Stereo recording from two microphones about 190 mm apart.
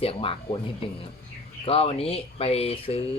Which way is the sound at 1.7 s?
30° left (ahead or behind).